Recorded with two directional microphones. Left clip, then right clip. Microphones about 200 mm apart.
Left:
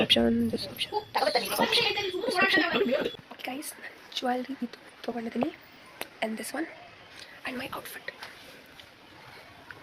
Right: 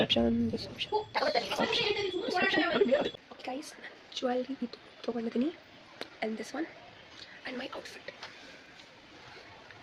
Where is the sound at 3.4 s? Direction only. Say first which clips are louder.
Left 2 dB; 5° right (ahead or behind).